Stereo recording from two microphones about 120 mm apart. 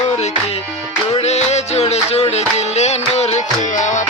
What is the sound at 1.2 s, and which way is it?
Music, 65° left (ahead or behind).